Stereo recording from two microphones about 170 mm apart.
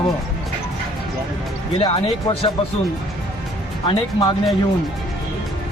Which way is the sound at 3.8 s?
30° left (ahead or behind).